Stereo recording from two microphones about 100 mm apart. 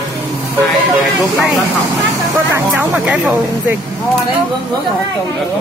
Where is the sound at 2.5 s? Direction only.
15° right (ahead or behind).